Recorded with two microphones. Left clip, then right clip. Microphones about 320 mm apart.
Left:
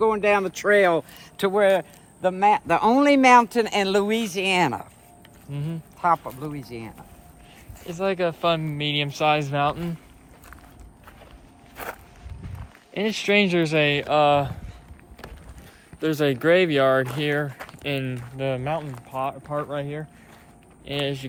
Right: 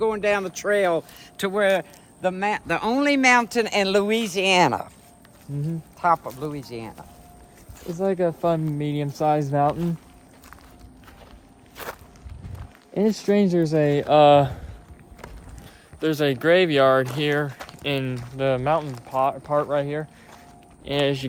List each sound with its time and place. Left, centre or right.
0.0 s speech: centre
1.5 s a man's voice: centre
6.0 s a man's voice: centre
12.9 s a man's voice: centre
14.1 s speech: right
16.0 s speech: centre; by 21.2 s right